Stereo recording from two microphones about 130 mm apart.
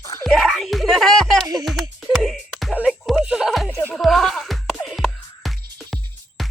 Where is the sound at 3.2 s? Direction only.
5° right (ahead or behind).